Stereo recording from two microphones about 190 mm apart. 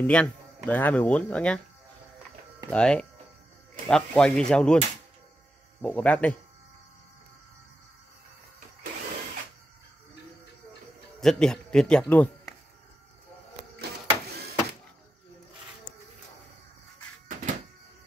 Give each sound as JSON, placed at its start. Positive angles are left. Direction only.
{"t": 0.0, "sound": "speech", "side_deg": 5}
{"t": 2.7, "sound": "speech", "side_deg": 5}
{"t": 5.8, "sound": "speech", "side_deg": 10}
{"t": 11.1, "sound": "speech", "side_deg": 0}
{"t": 13.7, "sound": "printer", "side_deg": -60}
{"t": 17.3, "sound": "music", "side_deg": -40}